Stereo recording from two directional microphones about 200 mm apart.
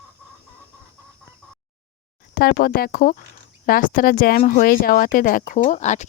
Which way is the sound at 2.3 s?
50° left (ahead or behind).